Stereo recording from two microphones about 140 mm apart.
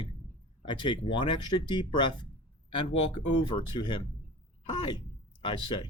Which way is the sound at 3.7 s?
35° left (ahead or behind).